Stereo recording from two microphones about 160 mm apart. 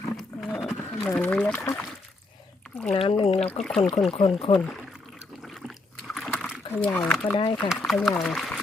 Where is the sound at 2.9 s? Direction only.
35° left (ahead or behind).